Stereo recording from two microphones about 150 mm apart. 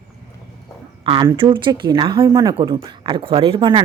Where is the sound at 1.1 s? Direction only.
30° right (ahead or behind).